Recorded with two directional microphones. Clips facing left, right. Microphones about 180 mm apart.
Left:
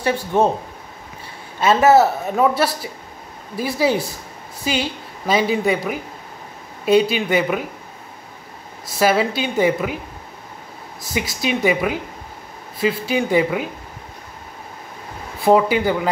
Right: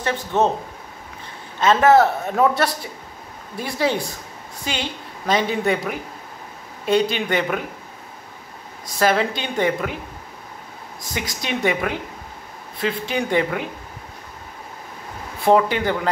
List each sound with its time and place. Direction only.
0.0 s a woman's voice: 10° left (ahead or behind)
1.6 s a woman's voice: 10° left (ahead or behind)
8.8 s a woman's voice: 5° left (ahead or behind)
11.0 s a woman's voice: 5° left (ahead or behind)
15.4 s a woman's voice: 5° left (ahead or behind)